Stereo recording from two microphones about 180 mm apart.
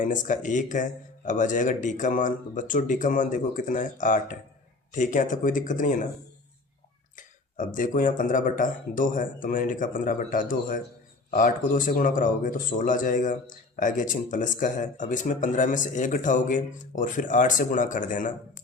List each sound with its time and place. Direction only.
0.0 s speech: 45° left (ahead or behind)
7.2 s speech: 45° left (ahead or behind)